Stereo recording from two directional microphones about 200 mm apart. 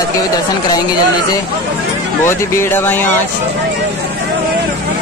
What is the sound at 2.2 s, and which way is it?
Speech, 10° left (ahead or behind).